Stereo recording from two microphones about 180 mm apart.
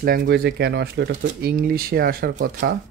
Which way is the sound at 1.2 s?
55° right (ahead or behind).